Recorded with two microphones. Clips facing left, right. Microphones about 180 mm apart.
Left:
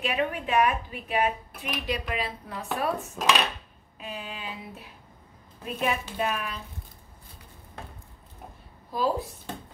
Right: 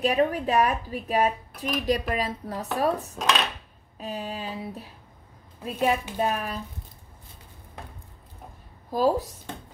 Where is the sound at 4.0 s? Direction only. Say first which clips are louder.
Right 5 dB; 40° right (ahead or behind).